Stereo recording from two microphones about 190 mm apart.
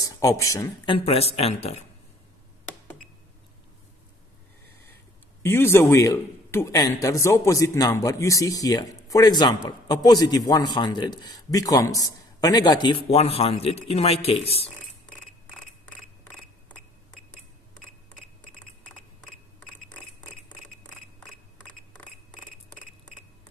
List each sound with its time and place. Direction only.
0.0 s speech: 15° left (ahead or behind)
0.9 s speech: 30° left (ahead or behind)
5.4 s a man's voice: 10° left (ahead or behind); by 14.7 s 30° left (ahead or behind)
17.3 s cash register: 5° left (ahead or behind)
19.6 s a sound: 5° left (ahead or behind)